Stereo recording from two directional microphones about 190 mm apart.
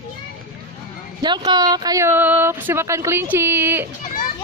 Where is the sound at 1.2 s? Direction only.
25° right (ahead or behind).